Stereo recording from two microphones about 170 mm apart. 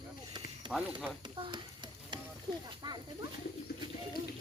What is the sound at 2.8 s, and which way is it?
Speech, 25° right (ahead or behind).